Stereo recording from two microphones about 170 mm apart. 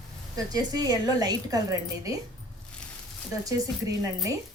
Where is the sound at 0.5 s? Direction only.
20° right (ahead or behind).